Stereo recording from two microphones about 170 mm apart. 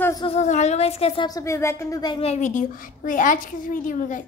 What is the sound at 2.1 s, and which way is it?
A woman's voice, 40° left (ahead or behind).